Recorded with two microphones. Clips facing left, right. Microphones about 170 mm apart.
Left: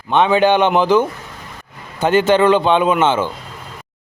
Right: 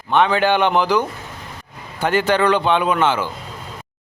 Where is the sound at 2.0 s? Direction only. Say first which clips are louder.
Left 4 dB; 20° left (ahead or behind).